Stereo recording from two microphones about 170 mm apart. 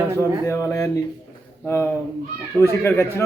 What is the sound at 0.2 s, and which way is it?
A man's voice, 15° left (ahead or behind).